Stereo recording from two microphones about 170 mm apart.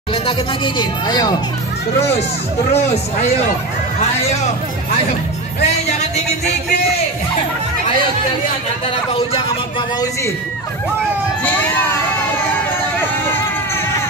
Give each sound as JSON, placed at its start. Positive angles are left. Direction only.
{"t": 0.1, "sound": "speech", "side_deg": 30}
{"t": 2.7, "sound": "speech", "side_deg": 40}
{"t": 9.1, "sound": "speech", "side_deg": 30}